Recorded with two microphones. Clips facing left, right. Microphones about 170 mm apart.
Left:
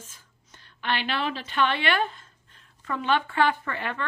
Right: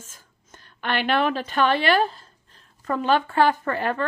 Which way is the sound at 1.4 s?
40° right (ahead or behind).